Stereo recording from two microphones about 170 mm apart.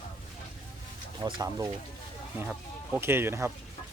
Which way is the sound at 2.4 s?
10° right (ahead or behind).